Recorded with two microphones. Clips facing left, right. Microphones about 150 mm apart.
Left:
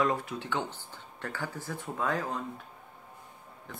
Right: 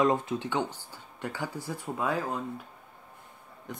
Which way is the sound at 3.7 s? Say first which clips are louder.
Right 5 dB; 15° right (ahead or behind).